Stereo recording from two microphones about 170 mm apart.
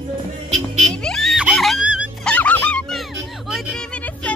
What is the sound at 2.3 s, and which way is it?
Music, 10° left (ahead or behind).